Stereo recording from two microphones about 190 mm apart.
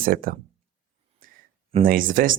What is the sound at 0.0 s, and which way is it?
Speech, 50° right (ahead or behind).